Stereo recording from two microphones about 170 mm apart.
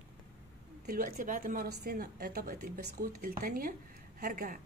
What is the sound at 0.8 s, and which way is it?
Speech, 55° right (ahead or behind).